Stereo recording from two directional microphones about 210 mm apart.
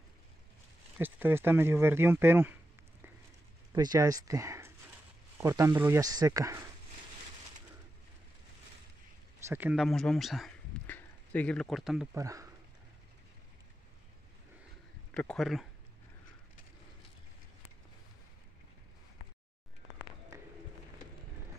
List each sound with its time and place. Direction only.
0.9 s speech: 10° right (ahead or behind)
3.7 s speech: 15° right (ahead or behind)
9.5 s speech: 5° right (ahead or behind)
12.2 s speech: 15° right (ahead or behind)
15.1 s speech: 5° left (ahead or behind)